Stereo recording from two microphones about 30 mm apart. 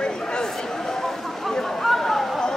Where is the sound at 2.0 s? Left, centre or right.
Centre.